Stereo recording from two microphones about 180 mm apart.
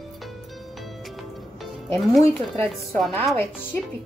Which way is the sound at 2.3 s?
Centre (ahead or behind).